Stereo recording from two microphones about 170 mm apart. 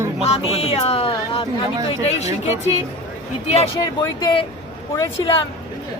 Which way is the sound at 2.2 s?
40° left (ahead or behind).